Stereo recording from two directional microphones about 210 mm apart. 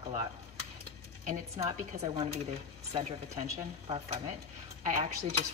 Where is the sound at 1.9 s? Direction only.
30° right (ahead or behind).